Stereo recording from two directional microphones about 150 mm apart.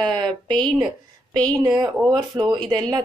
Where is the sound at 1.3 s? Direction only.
25° right (ahead or behind).